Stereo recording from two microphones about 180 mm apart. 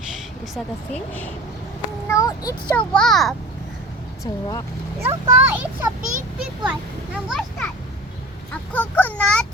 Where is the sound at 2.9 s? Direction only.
5° left (ahead or behind).